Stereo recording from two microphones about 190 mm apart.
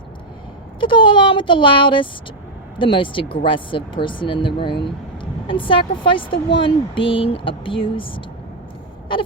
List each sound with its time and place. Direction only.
0.8 s speech: 25° left (ahead or behind)